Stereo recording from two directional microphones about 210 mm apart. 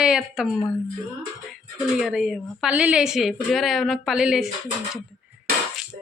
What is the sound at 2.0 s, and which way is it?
Speech, centre (ahead or behind).